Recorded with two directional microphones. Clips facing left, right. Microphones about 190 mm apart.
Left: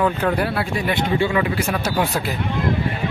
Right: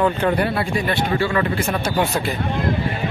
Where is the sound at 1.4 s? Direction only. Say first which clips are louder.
Even; 5° left (ahead or behind).